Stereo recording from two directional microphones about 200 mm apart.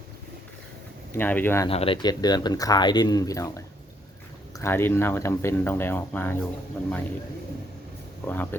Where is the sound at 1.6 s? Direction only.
25° left (ahead or behind); by 6.3 s 10° left (ahead or behind).